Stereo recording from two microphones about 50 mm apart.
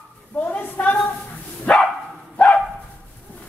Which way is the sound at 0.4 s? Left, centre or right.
Left.